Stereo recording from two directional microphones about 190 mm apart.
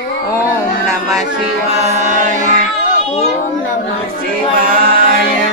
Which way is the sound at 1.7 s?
35° right (ahead or behind).